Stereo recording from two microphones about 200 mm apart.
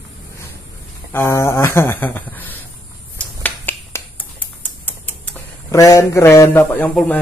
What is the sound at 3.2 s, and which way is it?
Finger snapping, 10° left (ahead or behind).